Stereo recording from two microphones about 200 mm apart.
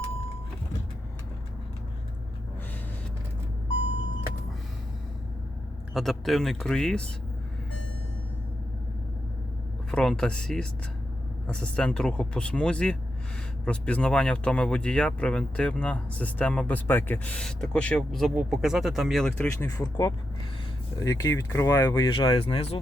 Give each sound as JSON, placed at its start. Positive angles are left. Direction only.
{"t": 5.9, "sound": "speech", "side_deg": 0}
{"t": 9.9, "sound": "speech", "side_deg": 5}